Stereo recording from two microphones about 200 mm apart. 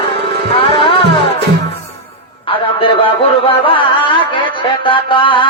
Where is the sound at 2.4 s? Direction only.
25° left (ahead or behind).